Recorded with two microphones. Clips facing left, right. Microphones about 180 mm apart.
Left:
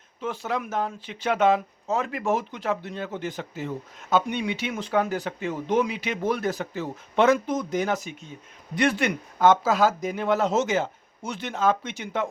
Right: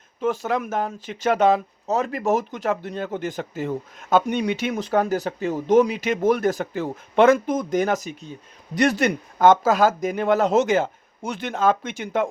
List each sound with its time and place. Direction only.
0.2 s speech: 50° right (ahead or behind)